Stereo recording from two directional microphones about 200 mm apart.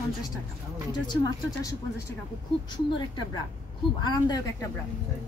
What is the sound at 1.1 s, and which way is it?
Speech, 20° left (ahead or behind).